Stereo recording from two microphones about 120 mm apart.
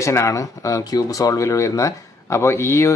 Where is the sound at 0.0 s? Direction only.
25° left (ahead or behind).